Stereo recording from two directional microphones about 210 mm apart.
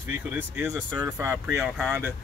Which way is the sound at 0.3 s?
5° right (ahead or behind).